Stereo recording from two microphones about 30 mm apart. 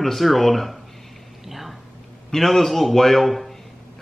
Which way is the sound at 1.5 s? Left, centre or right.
Centre.